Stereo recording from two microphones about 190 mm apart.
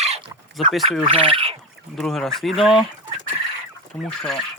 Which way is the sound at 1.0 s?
30° right (ahead or behind).